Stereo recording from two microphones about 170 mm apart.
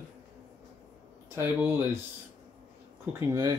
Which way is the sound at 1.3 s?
15° right (ahead or behind).